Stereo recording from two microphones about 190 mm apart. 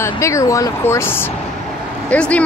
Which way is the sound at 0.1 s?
15° left (ahead or behind).